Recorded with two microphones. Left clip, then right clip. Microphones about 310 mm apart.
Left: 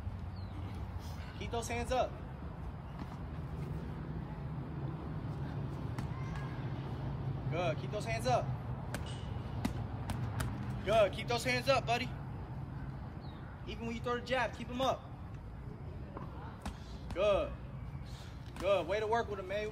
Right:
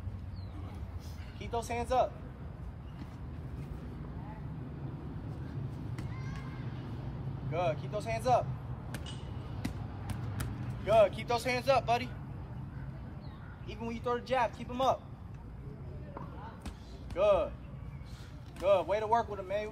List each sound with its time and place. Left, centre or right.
1.4 s speech: centre
7.5 s speech: centre
9.6 s vehicle: centre
10.9 s speech: centre
13.7 s speech: centre
17.1 s speech: centre
18.6 s speech: centre